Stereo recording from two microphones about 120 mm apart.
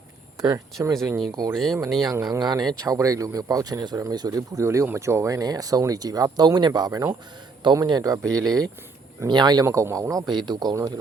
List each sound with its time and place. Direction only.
0.4 s speech: 30° right (ahead or behind)
1.9 s speech: 5° left (ahead or behind)
2.4 s speech: 35° right (ahead or behind)